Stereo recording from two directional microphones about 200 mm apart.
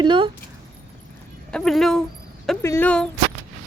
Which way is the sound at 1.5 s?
Centre (ahead or behind).